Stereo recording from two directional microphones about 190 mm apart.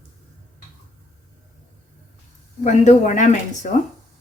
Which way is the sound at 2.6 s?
35° left (ahead or behind).